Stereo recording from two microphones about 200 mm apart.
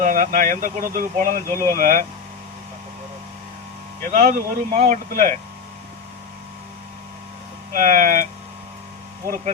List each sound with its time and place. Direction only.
0.0 s speech: 40° right (ahead or behind)
1.5 s speech: 15° left (ahead or behind)
1.7 s speech: 40° right (ahead or behind)
4.0 s speech: 40° right (ahead or behind)
7.7 s speech: 40° right (ahead or behind)